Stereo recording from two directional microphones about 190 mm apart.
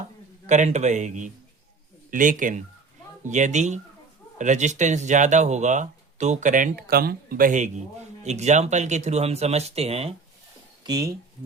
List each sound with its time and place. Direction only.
0.4 s speech: 40° right (ahead or behind)
10.8 s speech: 20° right (ahead or behind)